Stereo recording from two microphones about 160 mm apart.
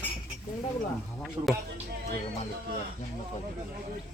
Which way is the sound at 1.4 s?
30° right (ahead or behind).